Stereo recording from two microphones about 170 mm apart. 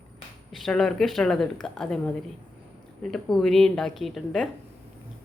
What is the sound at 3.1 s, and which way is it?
A woman's voice, centre (ahead or behind).